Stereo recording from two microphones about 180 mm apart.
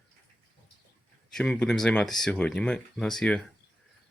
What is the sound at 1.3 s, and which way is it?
Speech, 5° left (ahead or behind).